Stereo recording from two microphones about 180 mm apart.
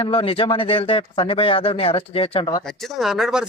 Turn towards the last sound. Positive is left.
turn(degrees=0)  # may be behind; listen again after turning